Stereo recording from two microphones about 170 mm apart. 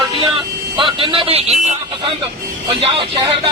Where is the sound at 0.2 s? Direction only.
30° right (ahead or behind).